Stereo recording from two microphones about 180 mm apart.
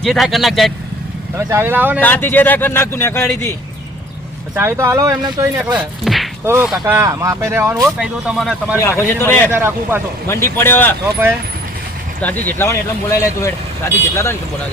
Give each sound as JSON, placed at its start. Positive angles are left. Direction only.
{"t": 0.0, "sound": "a man's voice", "side_deg": 0}
{"t": 1.4, "sound": "speech", "side_deg": -15}
{"t": 2.0, "sound": "a man's voice", "side_deg": 10}
{"t": 4.5, "sound": "speech", "side_deg": -15}
{"t": 8.8, "sound": "a man's voice", "side_deg": 15}
{"t": 9.5, "sound": "speech", "side_deg": -15}
{"t": 10.2, "sound": "a man's voice", "side_deg": 15}
{"t": 12.2, "sound": "a man's voice", "side_deg": 10}